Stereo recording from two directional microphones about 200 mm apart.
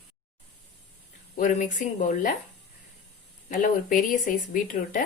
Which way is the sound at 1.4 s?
40° left (ahead or behind).